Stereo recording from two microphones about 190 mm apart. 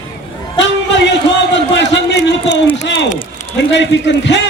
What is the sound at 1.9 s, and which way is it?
A man's voice, 70° left (ahead or behind).